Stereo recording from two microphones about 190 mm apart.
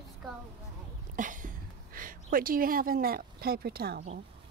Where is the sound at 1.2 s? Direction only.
45° right (ahead or behind).